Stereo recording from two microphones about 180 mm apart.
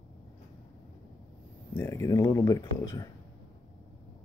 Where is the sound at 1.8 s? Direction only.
15° left (ahead or behind).